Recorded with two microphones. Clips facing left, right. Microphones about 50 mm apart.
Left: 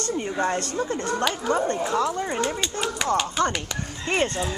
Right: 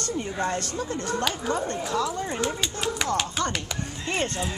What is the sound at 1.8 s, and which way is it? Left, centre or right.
Speech, left.